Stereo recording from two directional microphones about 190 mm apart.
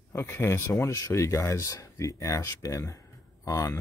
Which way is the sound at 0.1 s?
10° left (ahead or behind).